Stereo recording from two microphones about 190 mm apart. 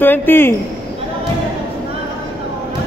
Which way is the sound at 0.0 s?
10° left (ahead or behind).